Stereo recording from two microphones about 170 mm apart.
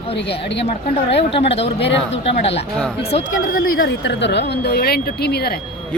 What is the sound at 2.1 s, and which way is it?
Speech, 40° left (ahead or behind).